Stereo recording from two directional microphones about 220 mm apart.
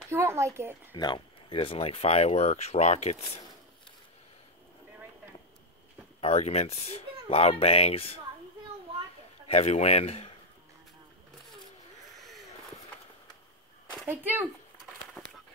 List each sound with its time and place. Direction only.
0.1 s speech: 10° right (ahead or behind)
0.9 s speech: 20° left (ahead or behind)
6.2 s speech: 30° left (ahead or behind)
9.5 s speech: 30° left (ahead or behind)
12.2 s a sound: centre (ahead or behind)
14.0 s speech: 10° right (ahead or behind)
15.2 s a sound: 5° left (ahead or behind)